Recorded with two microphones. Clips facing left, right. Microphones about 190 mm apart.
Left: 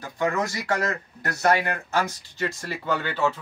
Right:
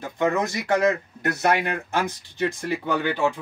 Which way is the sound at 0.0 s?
20° right (ahead or behind).